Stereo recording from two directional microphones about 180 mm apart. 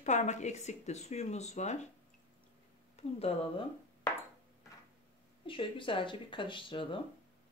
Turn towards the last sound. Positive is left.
turn(degrees=30)  # may be behind; listen again after turning